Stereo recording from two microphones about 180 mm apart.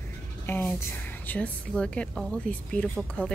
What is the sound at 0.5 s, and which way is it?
A woman's voice, 10° left (ahead or behind).